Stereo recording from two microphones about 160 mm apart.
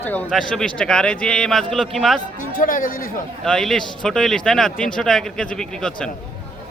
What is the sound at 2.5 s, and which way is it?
Speech, 60° left (ahead or behind).